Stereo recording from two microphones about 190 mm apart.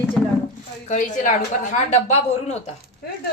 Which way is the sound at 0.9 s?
45° left (ahead or behind).